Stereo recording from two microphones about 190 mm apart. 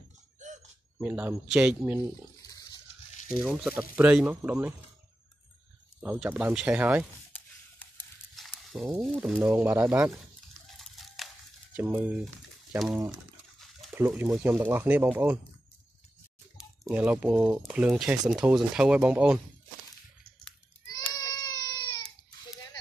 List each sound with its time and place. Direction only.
0.4 s a sound: 40° right (ahead or behind)
0.9 s speech: 10° right (ahead or behind)
2.4 s water: 20° left (ahead or behind)
3.3 s speech: 5° right (ahead or behind)
5.9 s speech: 5° right (ahead or behind)
8.4 s speech: centre (ahead or behind)
9.4 s speech: 10° right (ahead or behind)
10.7 s a sound: centre (ahead or behind)
11.7 s speech: 10° right (ahead or behind)
16.8 s speech: 5° right (ahead or behind)
21.2 s baby cry: 20° left (ahead or behind)